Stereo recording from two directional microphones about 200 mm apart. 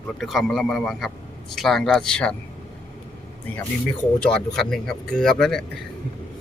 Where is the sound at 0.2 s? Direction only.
Centre (ahead or behind).